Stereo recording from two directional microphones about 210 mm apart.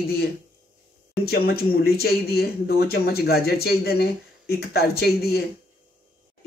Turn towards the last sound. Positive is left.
turn(degrees=50)  # may be behind; listen again after turning